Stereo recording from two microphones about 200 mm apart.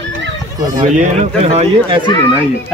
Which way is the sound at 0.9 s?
30° right (ahead or behind).